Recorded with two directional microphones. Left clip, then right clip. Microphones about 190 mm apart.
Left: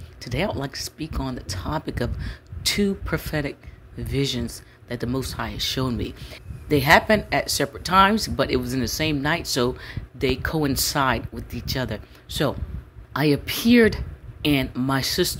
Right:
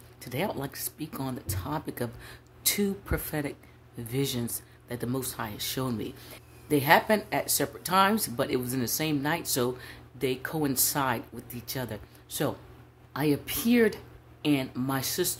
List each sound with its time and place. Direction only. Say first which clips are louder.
0.2 s a woman's voice: left 6 dB; 15° left (ahead or behind)